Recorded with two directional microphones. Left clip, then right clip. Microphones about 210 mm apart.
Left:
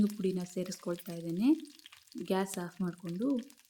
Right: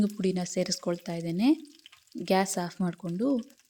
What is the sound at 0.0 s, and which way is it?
Speech, 25° right (ahead or behind).